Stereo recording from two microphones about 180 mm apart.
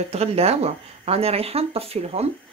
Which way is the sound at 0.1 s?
35° right (ahead or behind).